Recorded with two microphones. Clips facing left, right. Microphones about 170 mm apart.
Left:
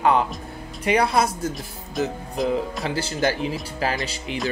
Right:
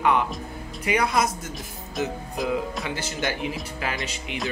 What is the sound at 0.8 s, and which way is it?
Speech, 30° left (ahead or behind).